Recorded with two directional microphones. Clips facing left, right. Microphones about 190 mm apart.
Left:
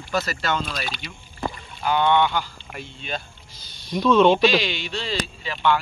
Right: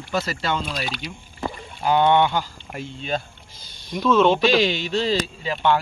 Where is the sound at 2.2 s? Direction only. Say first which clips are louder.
Right 1 dB; 35° right (ahead or behind).